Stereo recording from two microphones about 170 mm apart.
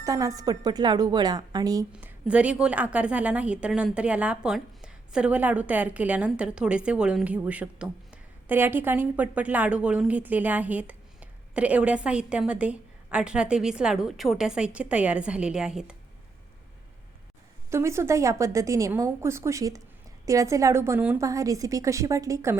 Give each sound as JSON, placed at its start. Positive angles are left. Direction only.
{"t": 0.0, "sound": "a woman's voice", "side_deg": -20}
{"t": 1.9, "sound": "a woman's voice", "side_deg": -10}
{"t": 17.7, "sound": "a woman's voice", "side_deg": -15}